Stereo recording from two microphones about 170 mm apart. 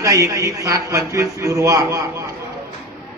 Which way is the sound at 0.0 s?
20° right (ahead or behind).